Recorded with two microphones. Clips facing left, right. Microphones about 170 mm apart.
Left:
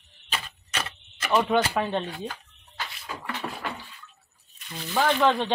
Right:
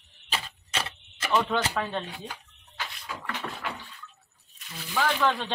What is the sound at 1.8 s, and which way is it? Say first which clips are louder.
Speech: left 4 dB; 20° left (ahead or behind).